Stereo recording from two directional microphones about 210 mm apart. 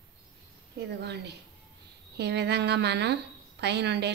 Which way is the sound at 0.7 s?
55° right (ahead or behind).